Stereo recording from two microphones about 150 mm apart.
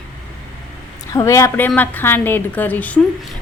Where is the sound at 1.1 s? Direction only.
20° left (ahead or behind).